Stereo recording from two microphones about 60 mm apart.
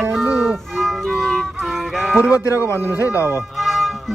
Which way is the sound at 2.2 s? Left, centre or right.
Right.